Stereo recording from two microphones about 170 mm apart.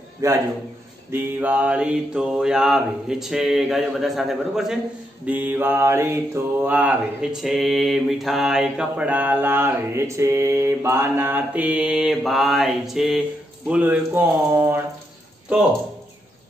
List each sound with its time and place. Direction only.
0.2 s mantra: 20° right (ahead or behind)